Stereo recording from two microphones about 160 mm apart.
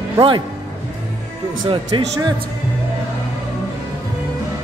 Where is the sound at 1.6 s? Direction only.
30° right (ahead or behind).